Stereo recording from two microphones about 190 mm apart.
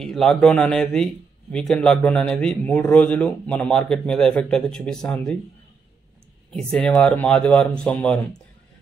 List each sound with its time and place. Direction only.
0.0 s a man's voice: centre (ahead or behind)
6.5 s a man's voice: 5° left (ahead or behind)